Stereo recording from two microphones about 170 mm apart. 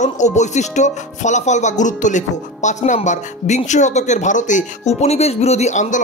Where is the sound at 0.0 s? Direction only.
45° left (ahead or behind).